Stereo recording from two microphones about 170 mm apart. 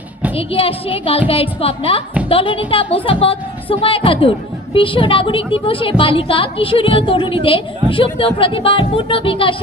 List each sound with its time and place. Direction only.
0.3 s a woman's voice: 35° left (ahead or behind)